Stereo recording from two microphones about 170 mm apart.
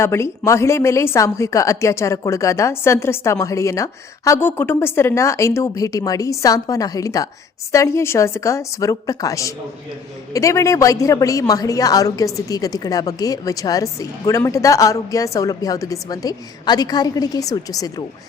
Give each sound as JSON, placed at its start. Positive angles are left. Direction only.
{"t": 0.0, "sound": "a woman's voice", "side_deg": 15}